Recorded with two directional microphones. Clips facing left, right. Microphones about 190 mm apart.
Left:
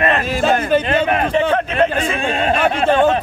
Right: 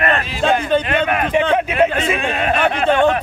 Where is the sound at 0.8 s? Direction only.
30° left (ahead or behind).